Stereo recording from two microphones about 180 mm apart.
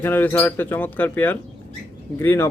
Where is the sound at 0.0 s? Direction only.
10° left (ahead or behind).